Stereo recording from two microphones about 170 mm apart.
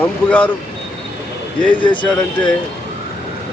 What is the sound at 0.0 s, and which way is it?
Speech, 10° left (ahead or behind).